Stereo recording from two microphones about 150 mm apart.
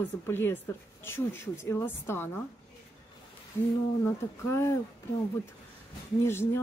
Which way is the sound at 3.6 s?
15° left (ahead or behind).